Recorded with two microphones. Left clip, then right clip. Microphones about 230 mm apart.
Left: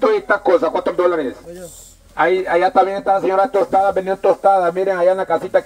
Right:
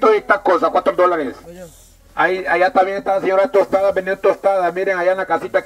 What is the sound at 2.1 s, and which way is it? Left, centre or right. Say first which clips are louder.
Speech: even; right.